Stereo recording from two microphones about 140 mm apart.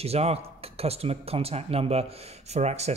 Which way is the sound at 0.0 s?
45° right (ahead or behind).